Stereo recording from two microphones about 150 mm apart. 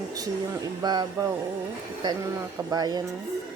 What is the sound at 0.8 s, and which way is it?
Speech, 25° right (ahead or behind).